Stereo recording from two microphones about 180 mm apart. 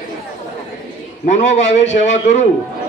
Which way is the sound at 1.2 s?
40° left (ahead or behind).